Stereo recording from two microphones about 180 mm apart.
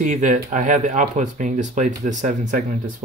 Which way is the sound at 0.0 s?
45° right (ahead or behind).